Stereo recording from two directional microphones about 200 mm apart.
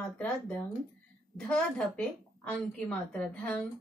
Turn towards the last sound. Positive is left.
turn(degrees=5)  # may be behind; listen again after turning